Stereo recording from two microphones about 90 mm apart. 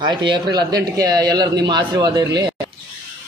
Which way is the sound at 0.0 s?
55° right (ahead or behind).